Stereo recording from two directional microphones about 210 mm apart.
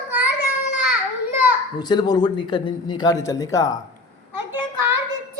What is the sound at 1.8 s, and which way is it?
Speech, 20° left (ahead or behind).